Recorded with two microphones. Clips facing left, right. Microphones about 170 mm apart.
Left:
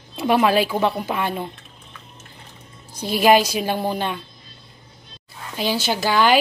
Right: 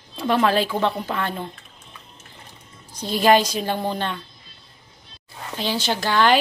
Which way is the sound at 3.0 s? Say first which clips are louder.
Left 1 dB; 10° left (ahead or behind).